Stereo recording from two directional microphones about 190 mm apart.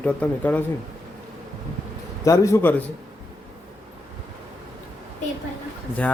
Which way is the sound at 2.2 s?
15° left (ahead or behind).